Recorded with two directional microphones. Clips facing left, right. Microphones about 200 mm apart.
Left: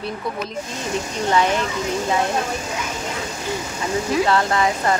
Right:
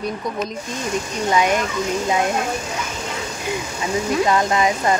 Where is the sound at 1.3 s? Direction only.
15° right (ahead or behind).